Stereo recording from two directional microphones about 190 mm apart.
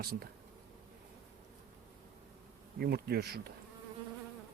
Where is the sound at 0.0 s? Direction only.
55° right (ahead or behind).